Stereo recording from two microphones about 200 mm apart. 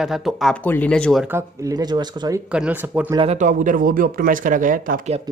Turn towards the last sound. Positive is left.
turn(degrees=-40)  # may be behind; listen again after turning